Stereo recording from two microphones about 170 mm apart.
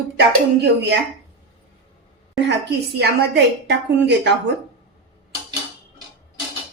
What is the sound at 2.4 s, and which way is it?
A woman's voice, 85° right.